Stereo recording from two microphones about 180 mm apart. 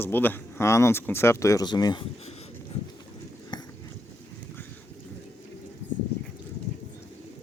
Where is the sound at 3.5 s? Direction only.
25° left (ahead or behind).